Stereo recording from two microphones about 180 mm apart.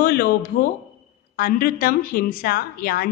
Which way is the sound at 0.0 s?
55° left (ahead or behind).